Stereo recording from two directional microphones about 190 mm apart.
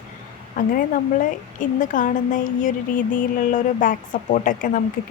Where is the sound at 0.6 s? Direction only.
45° left (ahead or behind).